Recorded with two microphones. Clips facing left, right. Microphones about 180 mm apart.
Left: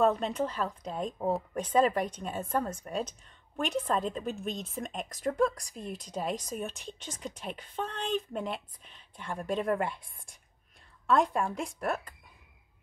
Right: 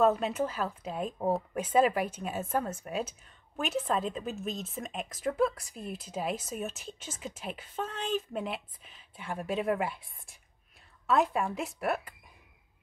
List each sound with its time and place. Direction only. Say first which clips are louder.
0.0 s a woman's voice: right 1 dB; 5° right (ahead or behind)